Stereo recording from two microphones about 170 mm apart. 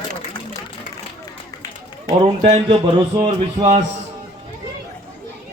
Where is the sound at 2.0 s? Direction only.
35° right (ahead or behind).